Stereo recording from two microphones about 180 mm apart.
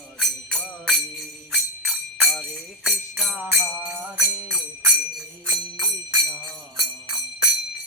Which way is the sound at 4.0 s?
5° right (ahead or behind).